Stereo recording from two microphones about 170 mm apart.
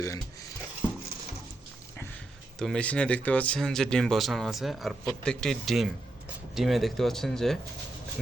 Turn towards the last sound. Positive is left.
turn(degrees=0)  # may be behind; listen again after turning